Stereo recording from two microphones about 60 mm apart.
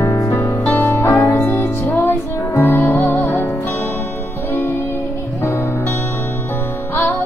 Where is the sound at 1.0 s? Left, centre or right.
Left.